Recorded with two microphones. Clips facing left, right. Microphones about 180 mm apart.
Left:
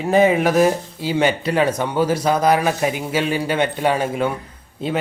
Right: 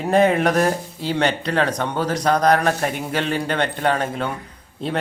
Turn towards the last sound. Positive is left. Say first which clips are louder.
# left 2 dB
turn(degrees=5)  # may be behind; listen again after turning